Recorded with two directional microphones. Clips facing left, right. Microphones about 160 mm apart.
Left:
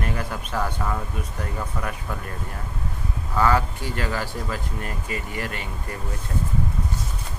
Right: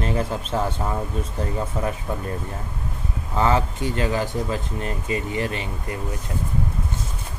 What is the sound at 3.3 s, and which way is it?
A man's voice, 20° right (ahead or behind).